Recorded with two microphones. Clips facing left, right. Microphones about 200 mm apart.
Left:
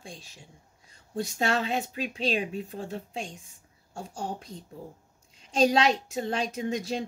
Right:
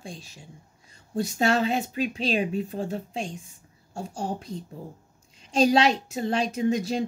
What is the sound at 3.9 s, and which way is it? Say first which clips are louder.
Speech: right 4 dB; 30° right (ahead or behind).